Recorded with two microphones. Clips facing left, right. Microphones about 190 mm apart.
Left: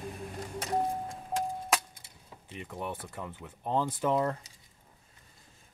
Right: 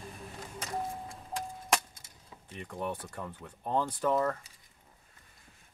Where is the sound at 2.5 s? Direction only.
5° left (ahead or behind).